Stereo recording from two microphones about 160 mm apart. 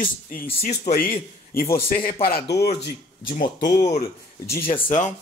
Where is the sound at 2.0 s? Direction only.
70° left (ahead or behind); by 2.9 s 90° left.